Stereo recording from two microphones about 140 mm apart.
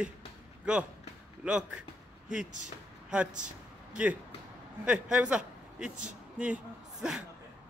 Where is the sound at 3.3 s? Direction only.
65° right (ahead or behind).